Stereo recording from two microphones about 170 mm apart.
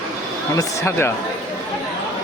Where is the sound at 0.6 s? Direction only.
15° left (ahead or behind).